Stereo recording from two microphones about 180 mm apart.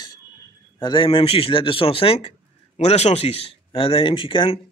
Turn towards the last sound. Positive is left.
turn(degrees=30)  # may be behind; listen again after turning